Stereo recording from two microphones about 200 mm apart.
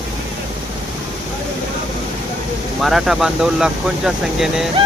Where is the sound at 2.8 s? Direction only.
Centre (ahead or behind).